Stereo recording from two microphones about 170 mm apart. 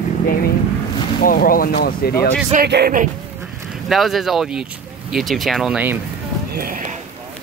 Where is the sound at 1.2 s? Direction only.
60° left (ahead or behind).